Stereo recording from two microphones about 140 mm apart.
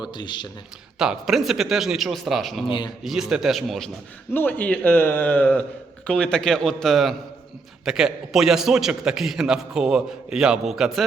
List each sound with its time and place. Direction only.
0.1 s speech: 35° left (ahead or behind)
0.9 s a man's voice: 5° right (ahead or behind)
2.6 s speech: 35° left (ahead or behind)
3.0 s a man's voice: 5° right (ahead or behind)
4.4 s a man's voice: 10° left (ahead or behind)